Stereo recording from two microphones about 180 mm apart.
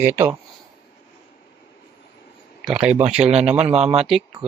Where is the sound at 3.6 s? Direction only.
35° right (ahead or behind).